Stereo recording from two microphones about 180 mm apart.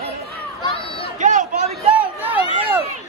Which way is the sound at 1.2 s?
45° right (ahead or behind).